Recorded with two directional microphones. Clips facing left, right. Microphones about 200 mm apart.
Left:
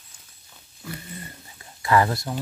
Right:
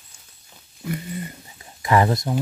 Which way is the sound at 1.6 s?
20° right (ahead or behind).